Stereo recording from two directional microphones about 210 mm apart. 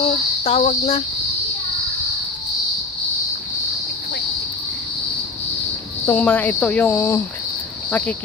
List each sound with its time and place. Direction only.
0.0 s speech: 25° left (ahead or behind)
6.0 s speech: 10° left (ahead or behind)